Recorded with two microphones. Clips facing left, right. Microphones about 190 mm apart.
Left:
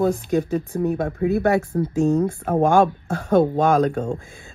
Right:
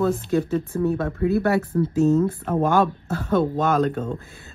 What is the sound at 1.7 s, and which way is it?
Speech, 45° left (ahead or behind).